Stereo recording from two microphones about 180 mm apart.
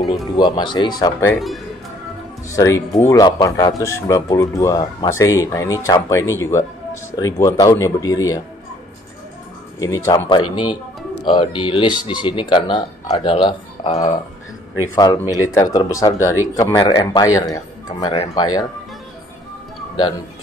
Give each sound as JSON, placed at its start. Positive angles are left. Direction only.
{"t": 0.0, "sound": "speech", "side_deg": 0}
{"t": 0.4, "sound": "speech", "side_deg": 25}
{"t": 2.5, "sound": "speech", "side_deg": 15}
{"t": 9.8, "sound": "speech", "side_deg": 20}
{"t": 15.0, "sound": "speech", "side_deg": 20}